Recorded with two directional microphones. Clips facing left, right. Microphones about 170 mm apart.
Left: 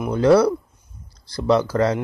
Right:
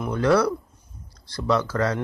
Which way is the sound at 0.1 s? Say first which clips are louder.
Left 5 dB; 25° left (ahead or behind).